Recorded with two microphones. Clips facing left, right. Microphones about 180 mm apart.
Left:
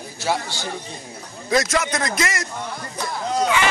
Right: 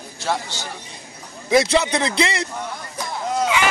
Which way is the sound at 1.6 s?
25° right (ahead or behind).